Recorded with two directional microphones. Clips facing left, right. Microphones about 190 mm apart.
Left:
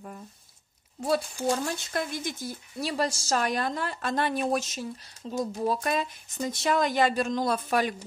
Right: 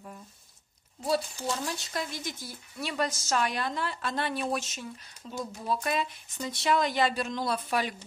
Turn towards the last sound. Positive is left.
turn(degrees=45)  # may be behind; listen again after turning